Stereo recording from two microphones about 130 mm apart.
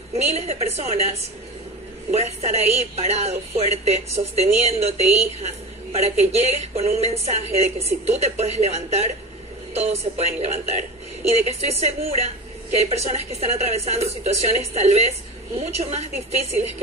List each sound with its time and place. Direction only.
0.2 s a woman's voice: 55° right (ahead or behind)
2.1 s a woman's voice: 55° right (ahead or behind)